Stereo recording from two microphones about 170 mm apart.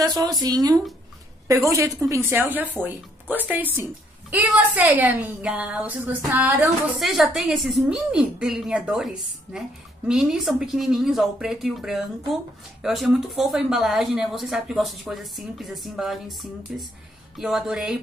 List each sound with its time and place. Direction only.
0.2 s a woman's voice: 20° right (ahead or behind)
7.0 s a woman's voice: centre (ahead or behind)